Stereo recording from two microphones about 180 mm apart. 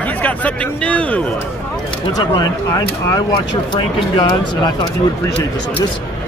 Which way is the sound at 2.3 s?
20° left (ahead or behind).